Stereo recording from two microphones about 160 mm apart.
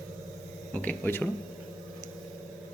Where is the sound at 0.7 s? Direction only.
10° left (ahead or behind).